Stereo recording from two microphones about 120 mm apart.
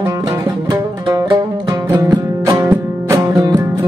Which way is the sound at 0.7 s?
35° right (ahead or behind).